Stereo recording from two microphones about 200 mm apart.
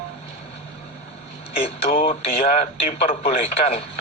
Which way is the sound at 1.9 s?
45° left (ahead or behind).